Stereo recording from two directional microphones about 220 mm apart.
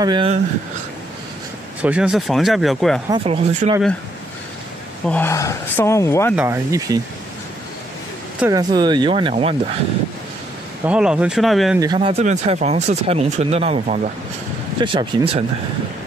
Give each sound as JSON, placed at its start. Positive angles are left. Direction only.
{"t": 0.0, "sound": "speech", "side_deg": -20}
{"t": 1.8, "sound": "speech", "side_deg": -5}
{"t": 3.1, "sound": "speech", "side_deg": -25}
{"t": 5.0, "sound": "speech", "side_deg": 10}
{"t": 6.3, "sound": "speech", "side_deg": -10}
{"t": 8.4, "sound": "speech", "side_deg": -15}
{"t": 10.9, "sound": "speech", "side_deg": -5}
{"t": 11.8, "sound": "speech", "side_deg": -20}